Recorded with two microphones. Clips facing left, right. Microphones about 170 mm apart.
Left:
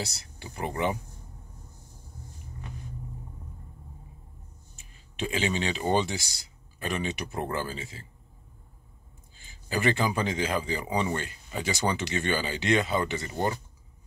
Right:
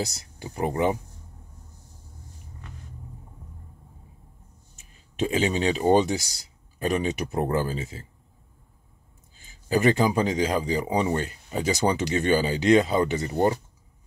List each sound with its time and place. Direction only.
0.0 s speech: 40° right (ahead or behind)
4.7 s speech: 40° right (ahead or behind)
9.7 s speech: 40° right (ahead or behind)